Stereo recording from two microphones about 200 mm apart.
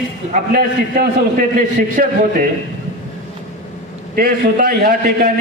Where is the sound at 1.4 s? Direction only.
40° right (ahead or behind).